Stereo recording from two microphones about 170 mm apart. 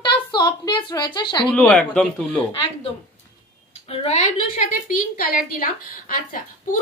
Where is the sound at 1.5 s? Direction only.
5° left (ahead or behind).